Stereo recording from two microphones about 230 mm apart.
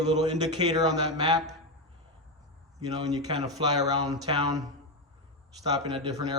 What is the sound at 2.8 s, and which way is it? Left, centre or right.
A man's voice, centre.